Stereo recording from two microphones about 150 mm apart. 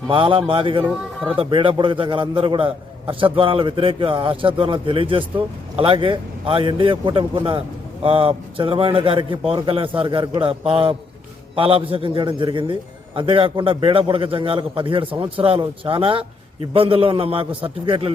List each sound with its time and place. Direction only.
0.1 s a man's voice: 35° right (ahead or behind)
0.9 s speech: centre (ahead or behind)
1.4 s a man's voice: 35° right (ahead or behind)